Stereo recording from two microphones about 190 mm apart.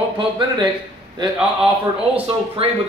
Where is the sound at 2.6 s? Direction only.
30° right (ahead or behind).